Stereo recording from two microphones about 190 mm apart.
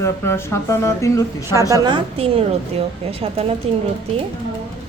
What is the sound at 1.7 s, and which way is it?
A woman's voice, 25° right (ahead or behind).